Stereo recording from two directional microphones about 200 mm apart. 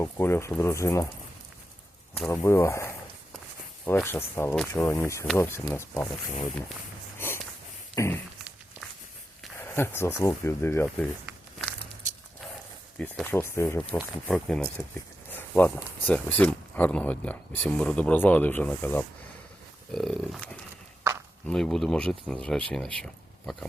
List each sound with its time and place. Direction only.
0.0 s speech: 10° left (ahead or behind)
2.2 s speech: 15° left (ahead or behind)
7.9 s speech: 15° left (ahead or behind)
9.7 s speech: 10° left (ahead or behind)
10.8 s a sound: centre (ahead or behind)
13.0 s speech: 10° left (ahead or behind)